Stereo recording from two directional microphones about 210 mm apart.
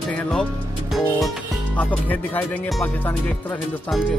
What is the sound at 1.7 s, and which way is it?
Speech, 10° left (ahead or behind).